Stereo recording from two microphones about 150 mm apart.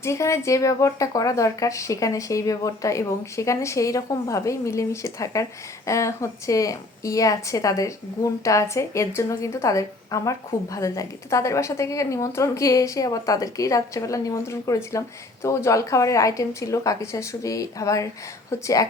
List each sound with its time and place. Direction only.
0.0 s a woman's voice: 20° left (ahead or behind)